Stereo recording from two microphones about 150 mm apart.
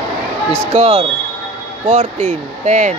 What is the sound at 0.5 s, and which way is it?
Speech, 50° right (ahead or behind).